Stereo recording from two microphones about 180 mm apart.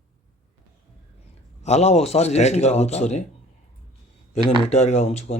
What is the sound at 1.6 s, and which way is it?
A man's voice, 35° left (ahead or behind).